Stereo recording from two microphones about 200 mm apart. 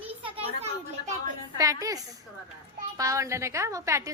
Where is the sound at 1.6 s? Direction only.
15° right (ahead or behind).